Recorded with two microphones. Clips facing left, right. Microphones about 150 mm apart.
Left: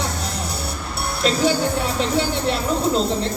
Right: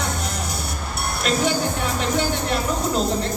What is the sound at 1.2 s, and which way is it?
Speech, 30° left (ahead or behind).